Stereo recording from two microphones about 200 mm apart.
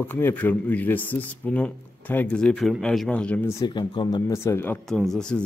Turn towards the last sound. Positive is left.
turn(degrees=5)  # may be behind; listen again after turning